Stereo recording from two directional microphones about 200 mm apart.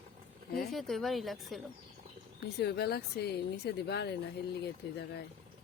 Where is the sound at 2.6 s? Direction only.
55° left (ahead or behind).